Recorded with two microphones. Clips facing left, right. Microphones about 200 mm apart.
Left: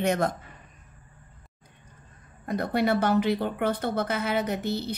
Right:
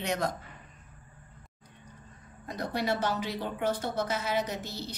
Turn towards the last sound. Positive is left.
turn(degrees=60)  # may be behind; listen again after turning